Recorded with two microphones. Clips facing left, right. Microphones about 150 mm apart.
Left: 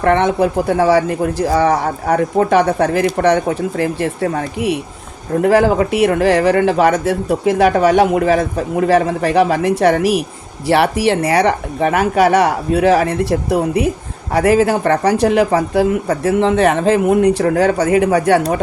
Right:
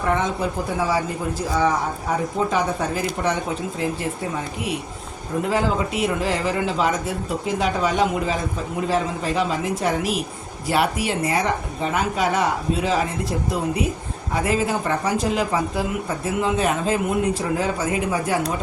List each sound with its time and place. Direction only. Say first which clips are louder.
0.0 s speech: left 9 dB; 70° left (ahead or behind)